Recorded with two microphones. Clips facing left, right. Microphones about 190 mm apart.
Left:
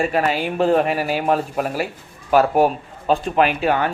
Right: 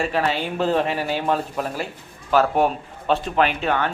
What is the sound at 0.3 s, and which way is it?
A man's voice, 5° left (ahead or behind).